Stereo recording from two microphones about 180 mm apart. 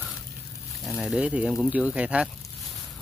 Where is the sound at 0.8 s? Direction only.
Centre (ahead or behind).